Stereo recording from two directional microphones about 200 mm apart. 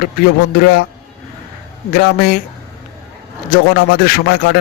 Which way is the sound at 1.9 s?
50° left (ahead or behind).